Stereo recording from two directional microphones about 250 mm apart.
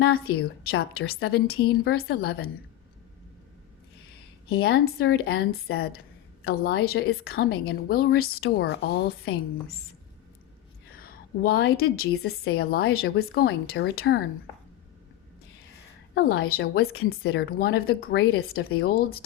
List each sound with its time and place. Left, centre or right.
0.3 s speech: left
4.4 s speech: left
11.0 s a woman's voice: left
16.5 s speech: left